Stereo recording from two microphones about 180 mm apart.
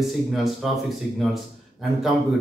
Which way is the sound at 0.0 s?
Centre (ahead or behind).